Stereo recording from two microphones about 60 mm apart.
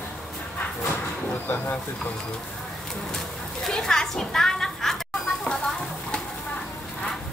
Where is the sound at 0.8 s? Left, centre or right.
Left.